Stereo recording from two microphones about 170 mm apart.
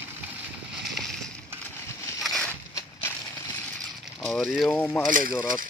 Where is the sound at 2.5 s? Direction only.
15° left (ahead or behind).